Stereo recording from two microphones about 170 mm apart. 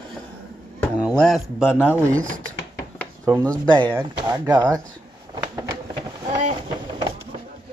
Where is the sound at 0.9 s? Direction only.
5° left (ahead or behind).